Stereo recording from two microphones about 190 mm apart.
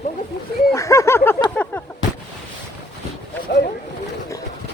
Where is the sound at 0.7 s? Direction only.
15° left (ahead or behind).